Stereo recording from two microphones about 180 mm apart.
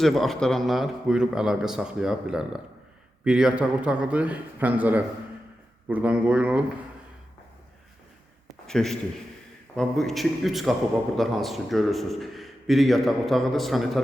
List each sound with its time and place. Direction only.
0.0 s a man's voice: centre (ahead or behind)
8.6 s a man's voice: 5° left (ahead or behind)